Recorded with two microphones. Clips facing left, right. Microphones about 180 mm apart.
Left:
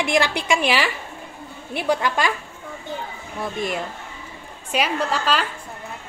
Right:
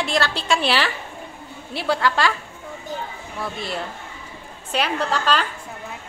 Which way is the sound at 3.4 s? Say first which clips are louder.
Left 3 dB; 15° left (ahead or behind).